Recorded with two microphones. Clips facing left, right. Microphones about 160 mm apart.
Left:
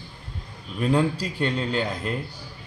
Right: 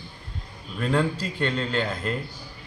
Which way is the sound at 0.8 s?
15° left (ahead or behind).